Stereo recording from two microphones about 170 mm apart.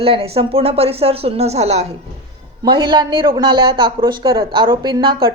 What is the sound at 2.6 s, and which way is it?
A man's voice, 30° right (ahead or behind).